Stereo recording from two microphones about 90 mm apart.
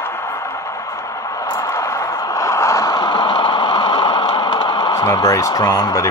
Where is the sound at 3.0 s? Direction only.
65° left (ahead or behind).